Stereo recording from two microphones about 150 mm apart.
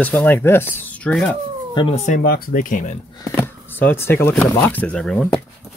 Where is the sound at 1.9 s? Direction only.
50° left (ahead or behind).